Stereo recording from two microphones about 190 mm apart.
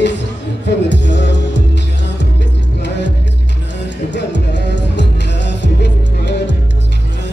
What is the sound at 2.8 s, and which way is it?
Music, 65° left (ahead or behind).